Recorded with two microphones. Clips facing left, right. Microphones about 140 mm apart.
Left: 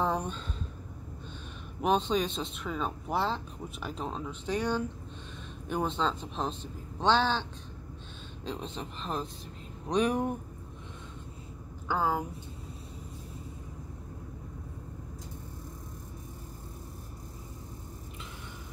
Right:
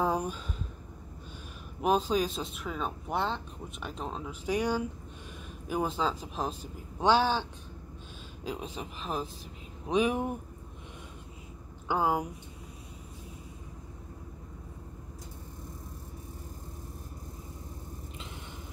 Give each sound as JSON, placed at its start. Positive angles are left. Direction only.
{"t": 0.0, "sound": "a sound", "side_deg": -10}
{"t": 1.8, "sound": "a man's voice", "side_deg": -5}
{"t": 8.5, "sound": "a man's voice", "side_deg": -5}
{"t": 11.9, "sound": "speech", "side_deg": -15}